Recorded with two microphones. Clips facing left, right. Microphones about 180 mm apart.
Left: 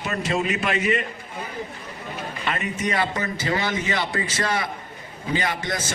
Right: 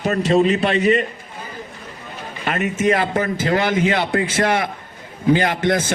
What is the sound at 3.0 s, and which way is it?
A man's voice, 50° right (ahead or behind).